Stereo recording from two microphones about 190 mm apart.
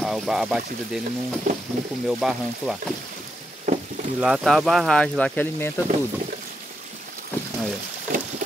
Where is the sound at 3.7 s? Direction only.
40° right (ahead or behind).